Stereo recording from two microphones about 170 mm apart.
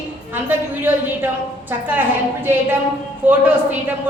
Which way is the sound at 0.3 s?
10° right (ahead or behind).